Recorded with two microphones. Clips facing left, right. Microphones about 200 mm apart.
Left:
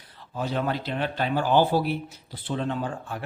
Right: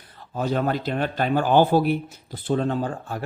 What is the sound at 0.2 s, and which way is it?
A man's voice, 45° right (ahead or behind).